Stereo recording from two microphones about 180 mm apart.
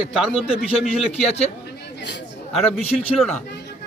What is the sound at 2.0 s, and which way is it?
Chatter, 75° left (ahead or behind).